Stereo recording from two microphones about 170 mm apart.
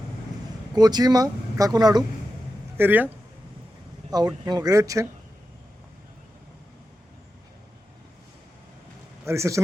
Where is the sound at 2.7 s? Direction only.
10° right (ahead or behind).